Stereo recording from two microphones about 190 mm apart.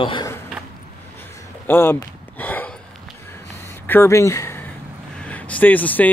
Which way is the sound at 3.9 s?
15° left (ahead or behind).